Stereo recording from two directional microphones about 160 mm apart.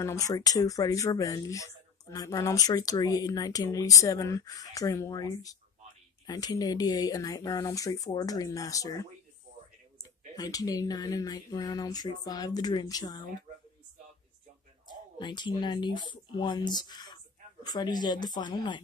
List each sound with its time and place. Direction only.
0.0 s speech: 20° left (ahead or behind)
10.3 s speech: 25° left (ahead or behind)
15.1 s speech: 30° left (ahead or behind)